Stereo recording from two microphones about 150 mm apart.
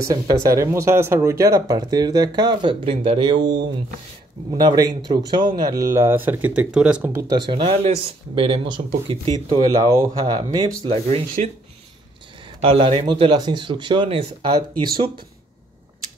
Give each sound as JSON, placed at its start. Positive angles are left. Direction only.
{"t": 0.0, "sound": "speech", "side_deg": -25}
{"t": 4.6, "sound": "speech", "side_deg": -25}
{"t": 7.2, "sound": "speech", "side_deg": -25}
{"t": 10.8, "sound": "speech", "side_deg": -40}
{"t": 12.6, "sound": "speech", "side_deg": -40}
{"t": 13.0, "sound": "speech", "side_deg": -30}
{"t": 14.7, "sound": "speech", "side_deg": -90}